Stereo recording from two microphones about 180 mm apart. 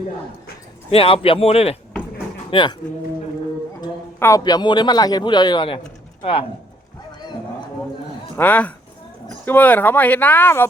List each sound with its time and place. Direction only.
0.9 s speech: 30° left (ahead or behind)
3.8 s a man's voice: 20° left (ahead or behind)
8.4 s speech: 10° left (ahead or behind)